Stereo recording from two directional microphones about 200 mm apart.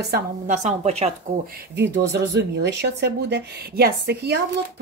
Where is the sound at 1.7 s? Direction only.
60° right (ahead or behind).